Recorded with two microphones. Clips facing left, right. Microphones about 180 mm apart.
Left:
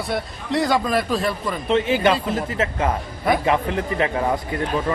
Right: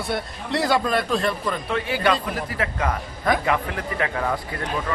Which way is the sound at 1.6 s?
20° left (ahead or behind).